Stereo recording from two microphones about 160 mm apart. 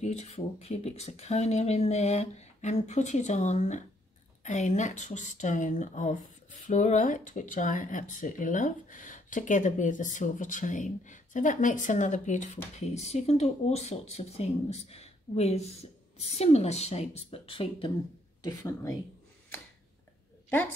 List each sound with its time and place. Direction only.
0.0 s speech: 45° left (ahead or behind)
18.4 s speech: 20° left (ahead or behind)
20.4 s a woman's voice: 10° left (ahead or behind)